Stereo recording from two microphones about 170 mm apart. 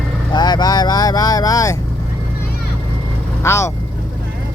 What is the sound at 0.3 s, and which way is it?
Vehicle, 25° left (ahead or behind).